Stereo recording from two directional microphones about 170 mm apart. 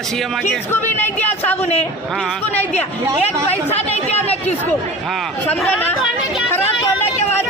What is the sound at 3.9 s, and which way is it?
Speech, 40° left (ahead or behind).